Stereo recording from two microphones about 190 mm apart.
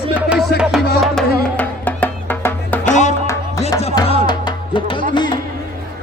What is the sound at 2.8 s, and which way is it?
Music, 40° left (ahead or behind).